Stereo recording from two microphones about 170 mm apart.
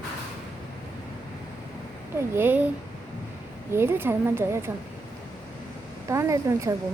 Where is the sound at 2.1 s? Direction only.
15° right (ahead or behind).